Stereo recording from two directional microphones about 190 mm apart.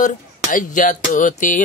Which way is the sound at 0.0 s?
45° left (ahead or behind).